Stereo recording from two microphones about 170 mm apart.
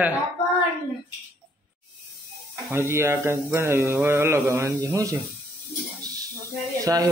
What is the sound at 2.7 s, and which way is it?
Speech, 15° right (ahead or behind).